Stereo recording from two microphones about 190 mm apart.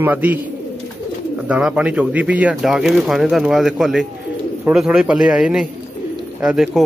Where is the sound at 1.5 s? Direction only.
5° right (ahead or behind).